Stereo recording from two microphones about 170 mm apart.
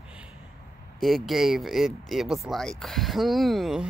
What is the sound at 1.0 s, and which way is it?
Speech, centre (ahead or behind).